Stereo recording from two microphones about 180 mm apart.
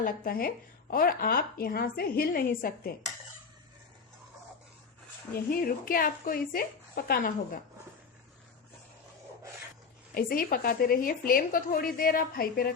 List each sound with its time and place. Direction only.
0.0 s speech: 55° left (ahead or behind)
5.3 s a woman's voice: 55° left (ahead or behind)
10.2 s a woman's voice: 55° left (ahead or behind)